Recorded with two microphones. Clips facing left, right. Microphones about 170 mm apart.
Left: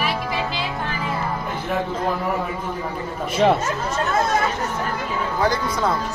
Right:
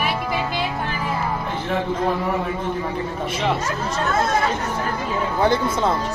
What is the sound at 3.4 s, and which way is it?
Speech, 50° left (ahead or behind).